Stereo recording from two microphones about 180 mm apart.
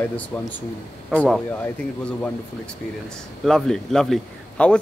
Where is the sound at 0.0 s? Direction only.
10° left (ahead or behind).